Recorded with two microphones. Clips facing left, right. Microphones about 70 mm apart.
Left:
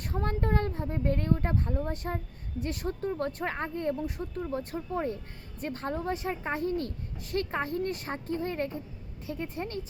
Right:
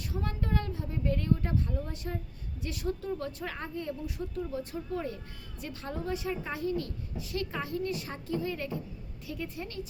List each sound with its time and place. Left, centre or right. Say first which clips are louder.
0.0 s speech: left 4 dB; left